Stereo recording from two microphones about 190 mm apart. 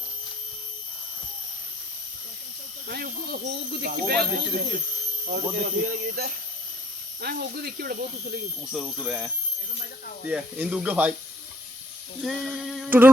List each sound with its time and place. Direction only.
2.8 s speech: 55° right (ahead or behind)
8.6 s speech: 5° right (ahead or behind)
12.2 s a sound: centre (ahead or behind)